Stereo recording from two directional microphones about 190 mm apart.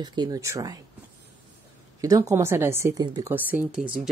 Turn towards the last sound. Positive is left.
turn(degrees=-5)  # may be behind; listen again after turning